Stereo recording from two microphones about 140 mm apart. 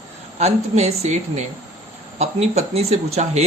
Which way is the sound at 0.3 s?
50° right (ahead or behind).